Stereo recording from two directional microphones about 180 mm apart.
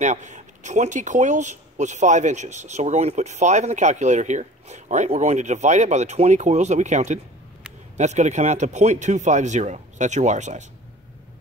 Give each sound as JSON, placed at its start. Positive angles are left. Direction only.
{"t": 0.0, "sound": "speech", "side_deg": -40}